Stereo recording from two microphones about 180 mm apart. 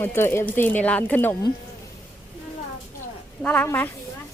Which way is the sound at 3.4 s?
10° left (ahead or behind).